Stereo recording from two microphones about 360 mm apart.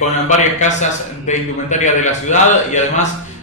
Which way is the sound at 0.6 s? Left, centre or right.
Centre.